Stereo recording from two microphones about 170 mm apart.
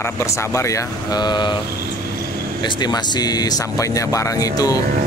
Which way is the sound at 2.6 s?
25° left (ahead or behind).